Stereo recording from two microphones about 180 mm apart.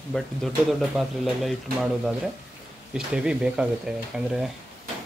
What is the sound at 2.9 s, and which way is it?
Speech, 5° right (ahead or behind).